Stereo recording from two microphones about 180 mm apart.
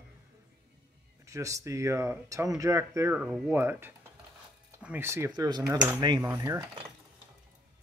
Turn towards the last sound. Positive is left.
turn(degrees=-15)  # may be behind; listen again after turning